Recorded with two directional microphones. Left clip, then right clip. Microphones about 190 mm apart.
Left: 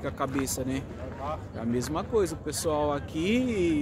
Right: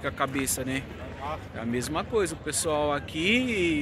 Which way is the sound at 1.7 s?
15° left (ahead or behind).